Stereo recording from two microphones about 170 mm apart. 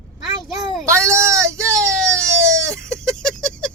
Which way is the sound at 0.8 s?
15° right (ahead or behind).